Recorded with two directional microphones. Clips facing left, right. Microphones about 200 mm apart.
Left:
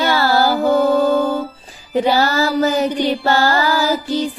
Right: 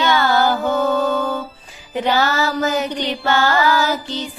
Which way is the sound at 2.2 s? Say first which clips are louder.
Left 3 dB; 35° left (ahead or behind).